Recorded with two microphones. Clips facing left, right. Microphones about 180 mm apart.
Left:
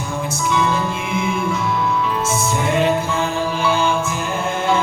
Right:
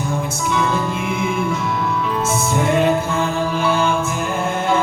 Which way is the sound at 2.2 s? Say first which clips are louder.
Right 1 dB; 55° right (ahead or behind).